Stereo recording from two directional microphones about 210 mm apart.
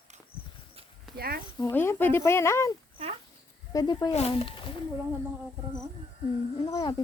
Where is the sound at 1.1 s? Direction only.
45° right (ahead or behind).